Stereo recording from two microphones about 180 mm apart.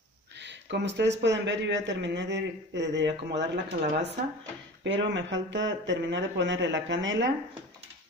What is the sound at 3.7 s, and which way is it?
Speech, 45° right (ahead or behind).